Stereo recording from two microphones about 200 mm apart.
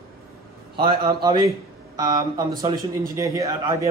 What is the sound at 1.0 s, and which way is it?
Speech, 20° right (ahead or behind).